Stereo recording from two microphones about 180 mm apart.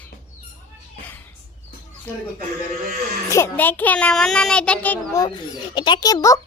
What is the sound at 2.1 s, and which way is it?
Child singing, 10° left (ahead or behind).